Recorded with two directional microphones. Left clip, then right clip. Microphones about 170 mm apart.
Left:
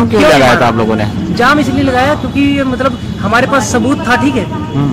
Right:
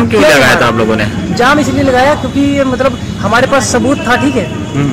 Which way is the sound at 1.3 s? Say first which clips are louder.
Even; 10° left (ahead or behind).